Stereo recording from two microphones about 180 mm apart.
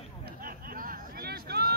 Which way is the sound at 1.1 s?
60° right (ahead or behind).